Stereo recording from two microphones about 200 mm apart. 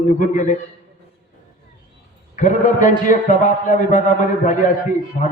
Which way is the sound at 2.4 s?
40° left (ahead or behind).